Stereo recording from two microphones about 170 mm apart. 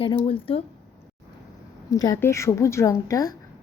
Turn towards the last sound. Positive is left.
turn(degrees=20)  # may be behind; listen again after turning